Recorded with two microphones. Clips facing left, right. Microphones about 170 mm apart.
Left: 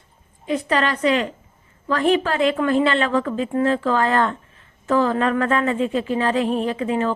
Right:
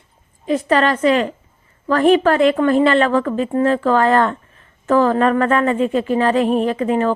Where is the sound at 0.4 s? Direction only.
45° right (ahead or behind).